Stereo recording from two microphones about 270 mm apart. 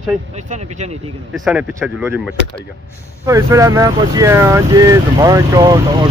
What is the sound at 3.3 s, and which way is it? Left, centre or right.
Speech, centre.